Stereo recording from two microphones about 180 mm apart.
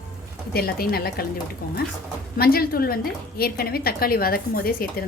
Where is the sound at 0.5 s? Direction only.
60° left (ahead or behind).